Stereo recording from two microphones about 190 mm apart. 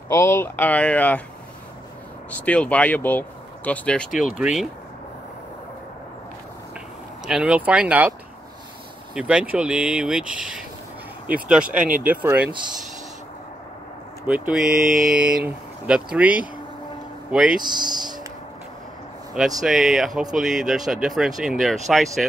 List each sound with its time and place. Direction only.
0.1 s speech: 15° left (ahead or behind)
2.3 s speech: 5° left (ahead or behind)
7.2 s speech: 5° right (ahead or behind)
9.1 s speech: 5° right (ahead or behind)
14.2 s speech: 5° right (ahead or behind)
17.6 s speech: 25° right (ahead or behind)
19.3 s speech: centre (ahead or behind)